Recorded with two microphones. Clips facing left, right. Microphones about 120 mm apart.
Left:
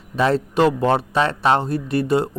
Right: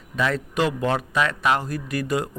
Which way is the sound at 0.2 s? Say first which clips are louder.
Left 6 dB; 30° left (ahead or behind).